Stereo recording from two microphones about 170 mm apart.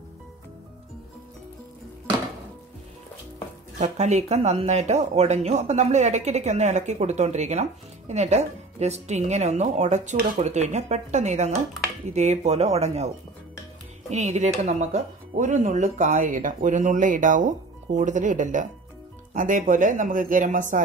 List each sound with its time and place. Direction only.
3.8 s speech: 40° right (ahead or behind)
14.1 s speech: 45° right (ahead or behind)